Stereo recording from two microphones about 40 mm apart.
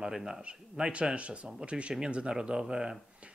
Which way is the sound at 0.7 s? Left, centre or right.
Right.